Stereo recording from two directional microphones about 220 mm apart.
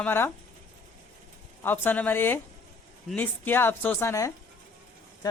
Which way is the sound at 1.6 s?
10° left (ahead or behind).